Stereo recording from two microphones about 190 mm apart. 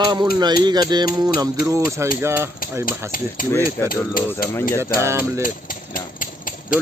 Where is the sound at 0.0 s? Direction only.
20° right (ahead or behind).